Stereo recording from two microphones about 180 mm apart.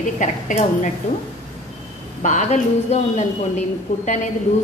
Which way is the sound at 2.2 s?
40° left (ahead or behind).